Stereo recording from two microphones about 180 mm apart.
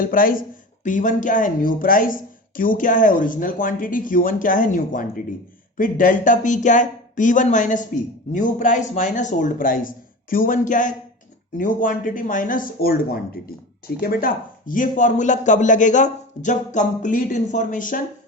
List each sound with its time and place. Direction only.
0.0 s speech: 50° left (ahead or behind)